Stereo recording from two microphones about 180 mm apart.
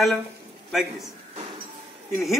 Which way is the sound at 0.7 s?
Centre (ahead or behind).